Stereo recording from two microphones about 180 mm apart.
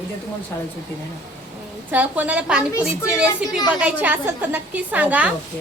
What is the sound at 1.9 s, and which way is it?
A woman's voice, 10° right (ahead or behind).